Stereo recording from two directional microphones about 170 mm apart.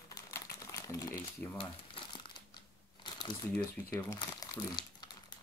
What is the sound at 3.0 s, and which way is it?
Crumpling, 25° left (ahead or behind).